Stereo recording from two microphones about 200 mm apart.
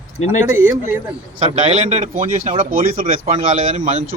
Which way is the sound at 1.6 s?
35° right (ahead or behind).